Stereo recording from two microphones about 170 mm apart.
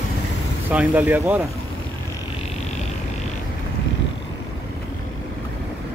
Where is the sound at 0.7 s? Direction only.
10° right (ahead or behind).